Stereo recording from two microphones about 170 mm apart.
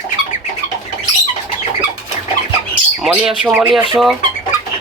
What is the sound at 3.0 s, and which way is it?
Speech, 5° right (ahead or behind).